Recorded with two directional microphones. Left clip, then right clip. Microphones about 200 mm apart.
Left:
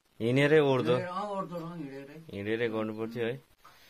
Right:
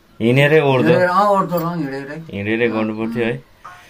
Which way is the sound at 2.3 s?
35° left (ahead or behind).